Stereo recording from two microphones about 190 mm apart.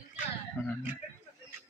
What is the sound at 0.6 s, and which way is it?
Speech, 10° left (ahead or behind).